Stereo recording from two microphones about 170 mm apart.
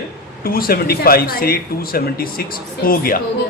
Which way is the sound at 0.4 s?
60° left (ahead or behind).